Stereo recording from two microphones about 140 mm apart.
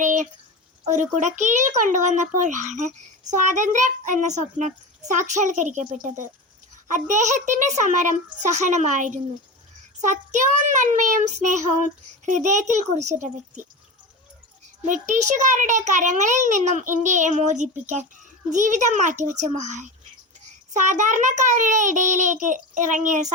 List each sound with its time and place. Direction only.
0.0 s a sound: 65° right (ahead or behind)
0.9 s a child's voice: 60° right (ahead or behind)
14.8 s a child's voice: 65° right (ahead or behind)